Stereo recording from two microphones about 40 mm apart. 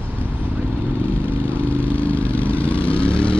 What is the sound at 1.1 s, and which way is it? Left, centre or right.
Vehicle, left.